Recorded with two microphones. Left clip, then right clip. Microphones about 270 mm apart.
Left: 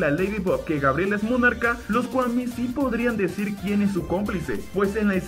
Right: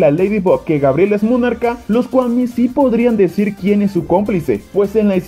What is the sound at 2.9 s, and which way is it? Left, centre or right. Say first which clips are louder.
Speech: right 11 dB; right.